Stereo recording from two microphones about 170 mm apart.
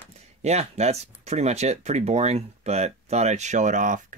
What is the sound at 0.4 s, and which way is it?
Speech, 40° right (ahead or behind).